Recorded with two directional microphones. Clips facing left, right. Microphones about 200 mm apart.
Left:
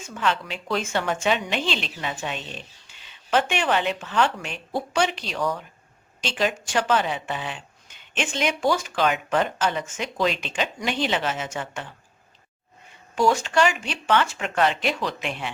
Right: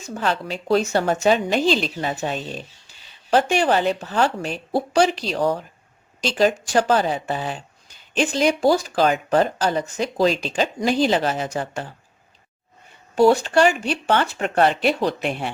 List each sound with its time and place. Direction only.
0.0 s a woman's voice: 40° right (ahead or behind)
13.1 s a woman's voice: 35° right (ahead or behind)